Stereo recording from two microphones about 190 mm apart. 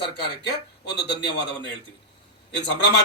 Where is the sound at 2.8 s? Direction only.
65° left (ahead or behind).